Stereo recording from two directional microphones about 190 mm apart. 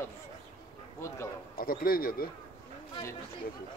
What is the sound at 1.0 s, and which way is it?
Speech, 15° left (ahead or behind).